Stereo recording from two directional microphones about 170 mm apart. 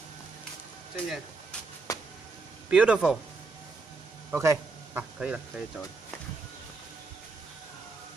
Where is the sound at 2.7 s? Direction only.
5° right (ahead or behind).